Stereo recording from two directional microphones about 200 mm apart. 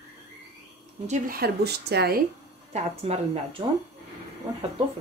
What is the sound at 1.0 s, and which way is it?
Speech, 40° right (ahead or behind).